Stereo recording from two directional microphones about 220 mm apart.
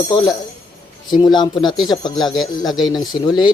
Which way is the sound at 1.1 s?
20° left (ahead or behind).